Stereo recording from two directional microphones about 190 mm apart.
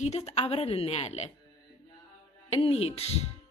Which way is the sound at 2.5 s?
30° left (ahead or behind).